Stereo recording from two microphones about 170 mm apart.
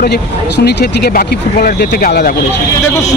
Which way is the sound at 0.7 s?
80° left.